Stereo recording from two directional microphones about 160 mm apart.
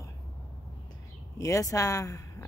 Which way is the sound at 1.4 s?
20° left (ahead or behind).